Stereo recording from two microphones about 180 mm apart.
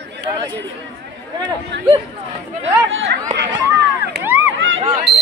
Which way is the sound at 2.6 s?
90° right.